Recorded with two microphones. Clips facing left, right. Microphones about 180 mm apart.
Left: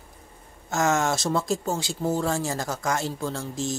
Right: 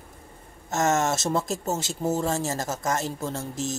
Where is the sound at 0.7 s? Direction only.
Centre (ahead or behind).